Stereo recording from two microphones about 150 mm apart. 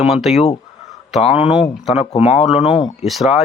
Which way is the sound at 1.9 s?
45° left (ahead or behind).